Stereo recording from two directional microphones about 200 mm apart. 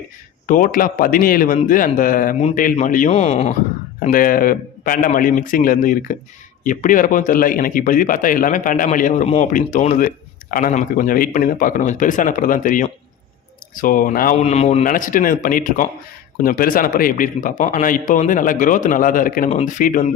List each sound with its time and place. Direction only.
0.4 s a man's voice: 40° left (ahead or behind)
4.0 s a man's voice: 45° left (ahead or behind)